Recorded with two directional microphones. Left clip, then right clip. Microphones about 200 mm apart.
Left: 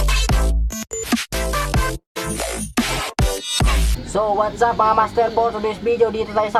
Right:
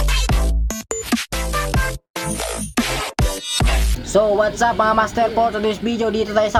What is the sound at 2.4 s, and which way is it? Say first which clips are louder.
Music: even; centre (ahead or behind).